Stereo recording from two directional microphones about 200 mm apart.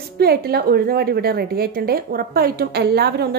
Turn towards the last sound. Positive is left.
turn(degrees=-55)  # may be behind; listen again after turning